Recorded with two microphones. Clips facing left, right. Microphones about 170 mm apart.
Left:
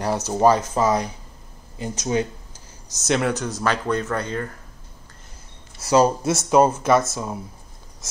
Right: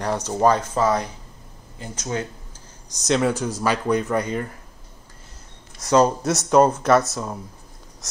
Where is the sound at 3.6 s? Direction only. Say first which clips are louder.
Right 2 dB; 10° right (ahead or behind).